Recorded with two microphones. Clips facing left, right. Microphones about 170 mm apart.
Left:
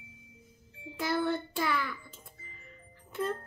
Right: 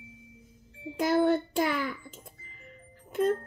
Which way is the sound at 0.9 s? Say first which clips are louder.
Right 7 dB; 50° right (ahead or behind).